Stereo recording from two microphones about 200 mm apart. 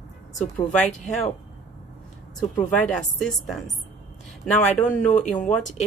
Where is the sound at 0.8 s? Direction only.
35° left (ahead or behind).